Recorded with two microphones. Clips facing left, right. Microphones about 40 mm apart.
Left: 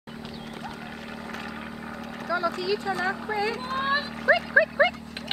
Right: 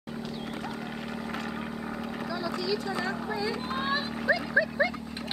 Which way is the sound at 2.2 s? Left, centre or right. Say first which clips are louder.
Left 9 dB; centre.